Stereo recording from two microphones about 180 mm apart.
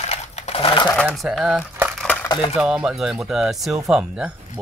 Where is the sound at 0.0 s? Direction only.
35° left (ahead or behind).